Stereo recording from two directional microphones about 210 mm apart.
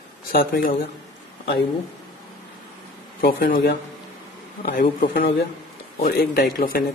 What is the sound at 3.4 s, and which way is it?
Speech, 50° left (ahead or behind).